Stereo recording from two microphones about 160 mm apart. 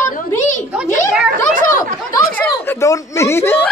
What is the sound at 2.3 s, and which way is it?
Speech, 10° left (ahead or behind).